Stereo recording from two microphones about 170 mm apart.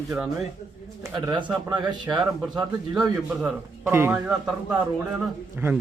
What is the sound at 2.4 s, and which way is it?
A man's voice, 5° right (ahead or behind).